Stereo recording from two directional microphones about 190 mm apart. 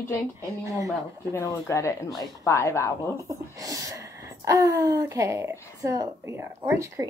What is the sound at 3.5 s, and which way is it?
A woman's voice, 20° right (ahead or behind).